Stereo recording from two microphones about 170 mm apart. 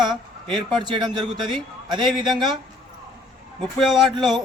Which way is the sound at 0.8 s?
25° right (ahead or behind).